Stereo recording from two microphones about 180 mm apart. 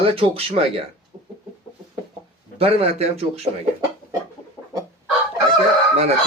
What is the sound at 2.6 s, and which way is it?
Speech, 35° right (ahead or behind).